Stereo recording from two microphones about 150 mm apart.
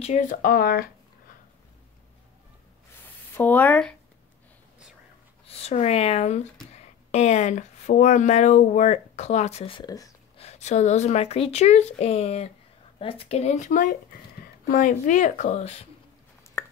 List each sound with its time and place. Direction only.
0.0 s speech: 55° left (ahead or behind); by 0.8 s 85° left
3.3 s speech: 10° left (ahead or behind)
5.5 s speech: 45° left (ahead or behind)
9.8 s speech: 25° left (ahead or behind)
10.3 s a woman's voice: 45° left (ahead or behind)
16.6 s a sound: 10° left (ahead or behind)